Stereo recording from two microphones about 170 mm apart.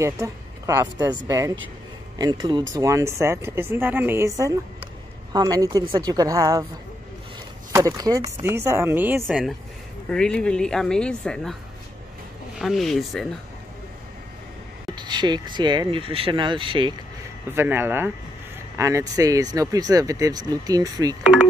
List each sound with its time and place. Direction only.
0.0 s speech: 20° right (ahead or behind)
7.7 s speech: 20° right (ahead or behind)
9.3 s speech: centre (ahead or behind)
12.5 s speech: centre (ahead or behind)
15.0 s speech: 25° right (ahead or behind)
17.5 s speech: 15° right (ahead or behind)